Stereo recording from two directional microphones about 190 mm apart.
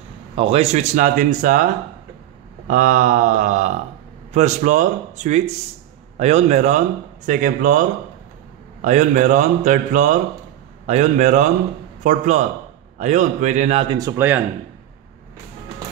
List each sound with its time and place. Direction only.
0.4 s speech: 30° right (ahead or behind)
2.7 s speech: 40° right (ahead or behind)
8.8 s speech: 40° right (ahead or behind)
13.9 s speech: 15° right (ahead or behind)